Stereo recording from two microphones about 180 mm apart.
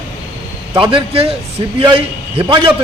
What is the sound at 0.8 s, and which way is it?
A man's voice, 30° right (ahead or behind).